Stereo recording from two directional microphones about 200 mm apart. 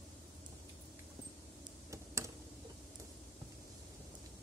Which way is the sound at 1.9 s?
15° right (ahead or behind).